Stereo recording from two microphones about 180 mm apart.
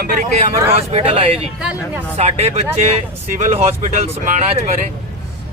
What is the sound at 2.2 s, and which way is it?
Speech, 35° right (ahead or behind).